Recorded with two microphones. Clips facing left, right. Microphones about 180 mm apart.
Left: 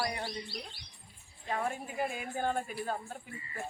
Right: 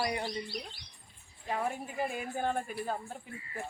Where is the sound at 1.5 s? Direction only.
5° right (ahead or behind).